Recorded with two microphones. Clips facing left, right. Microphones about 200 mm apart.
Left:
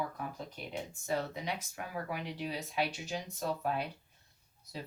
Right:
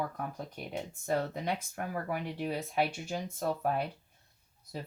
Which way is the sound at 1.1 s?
55° right (ahead or behind).